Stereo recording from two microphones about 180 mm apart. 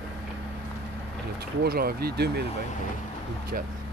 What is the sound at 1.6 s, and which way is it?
Speech, 60° right (ahead or behind).